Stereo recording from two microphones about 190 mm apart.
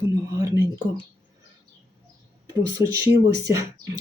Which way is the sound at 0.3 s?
15° right (ahead or behind).